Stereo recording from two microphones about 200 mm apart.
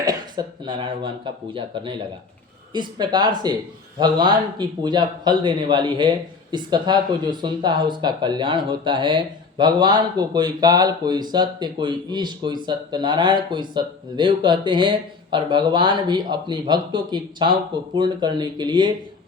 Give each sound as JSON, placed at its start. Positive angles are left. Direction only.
{"t": 0.0, "sound": "speech", "side_deg": -20}